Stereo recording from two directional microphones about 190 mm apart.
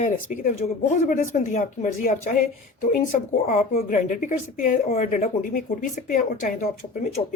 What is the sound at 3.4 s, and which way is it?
A woman's voice, 40° left (ahead or behind).